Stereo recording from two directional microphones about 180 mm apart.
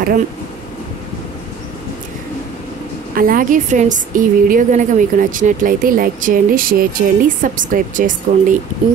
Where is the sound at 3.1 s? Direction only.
50° right (ahead or behind).